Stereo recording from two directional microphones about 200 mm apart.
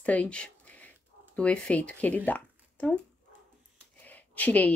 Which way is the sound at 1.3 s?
5° left (ahead or behind).